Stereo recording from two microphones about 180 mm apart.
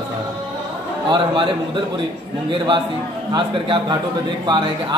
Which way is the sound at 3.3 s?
25° right (ahead or behind).